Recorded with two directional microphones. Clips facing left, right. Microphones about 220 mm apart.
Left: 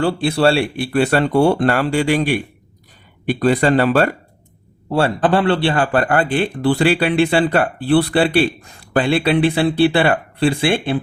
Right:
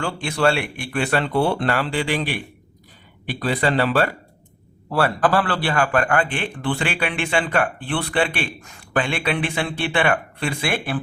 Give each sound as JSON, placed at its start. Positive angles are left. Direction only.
{"t": 0.0, "sound": "speech", "side_deg": 35}
{"t": 3.4, "sound": "speech", "side_deg": 45}
{"t": 4.9, "sound": "a man's voice", "side_deg": 25}